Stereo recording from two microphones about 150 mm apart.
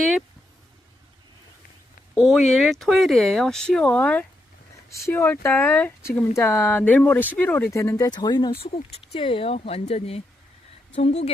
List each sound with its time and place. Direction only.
2.1 s speech: centre (ahead or behind); by 11.3 s 45° left (ahead or behind)